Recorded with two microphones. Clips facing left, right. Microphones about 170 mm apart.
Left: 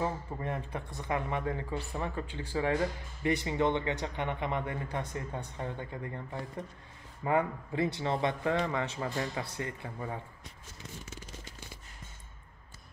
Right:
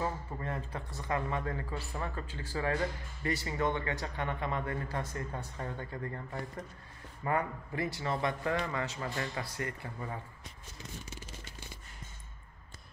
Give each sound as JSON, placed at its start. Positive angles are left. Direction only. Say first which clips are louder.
{"t": 0.0, "sound": "speech", "louder": "left 2 dB", "side_deg": 20}
{"t": 7.2, "sound": "speech", "louder": "left 3 dB", "side_deg": 20}